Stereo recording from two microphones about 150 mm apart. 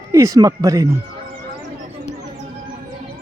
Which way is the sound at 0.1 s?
20° right (ahead or behind).